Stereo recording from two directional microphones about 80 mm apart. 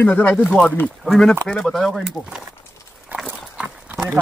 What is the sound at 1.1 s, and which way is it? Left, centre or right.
Speech, centre.